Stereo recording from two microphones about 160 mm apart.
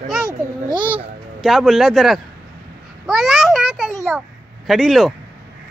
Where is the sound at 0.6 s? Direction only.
30° right (ahead or behind).